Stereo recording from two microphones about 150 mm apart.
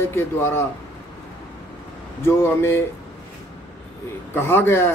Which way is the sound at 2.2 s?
15° left (ahead or behind).